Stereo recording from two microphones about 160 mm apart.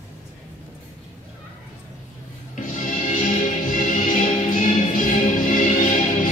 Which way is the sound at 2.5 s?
50° left (ahead or behind).